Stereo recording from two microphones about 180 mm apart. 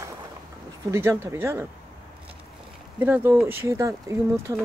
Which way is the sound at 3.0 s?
10° right (ahead or behind).